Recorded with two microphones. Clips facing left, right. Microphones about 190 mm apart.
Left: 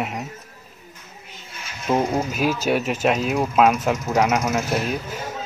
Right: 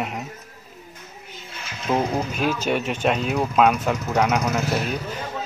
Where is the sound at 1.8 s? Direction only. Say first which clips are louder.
Left 2 dB; 10° left (ahead or behind).